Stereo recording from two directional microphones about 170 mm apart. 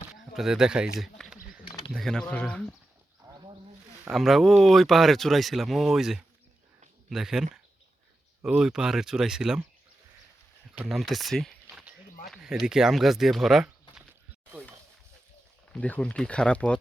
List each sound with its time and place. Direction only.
0.3 s speech: 5° right (ahead or behind)
0.9 s a sound: centre (ahead or behind)
1.9 s speech: centre (ahead or behind)
3.2 s wild animals: 25° right (ahead or behind)
4.1 s speech: centre (ahead or behind)
10.8 s speech: centre (ahead or behind)
15.7 s speech: 5° left (ahead or behind)